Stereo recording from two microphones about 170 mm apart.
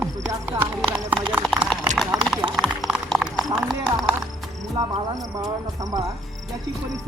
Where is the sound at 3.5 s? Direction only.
Centre (ahead or behind).